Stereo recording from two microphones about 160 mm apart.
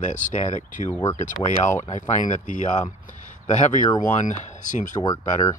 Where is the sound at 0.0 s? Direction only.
50° left (ahead or behind).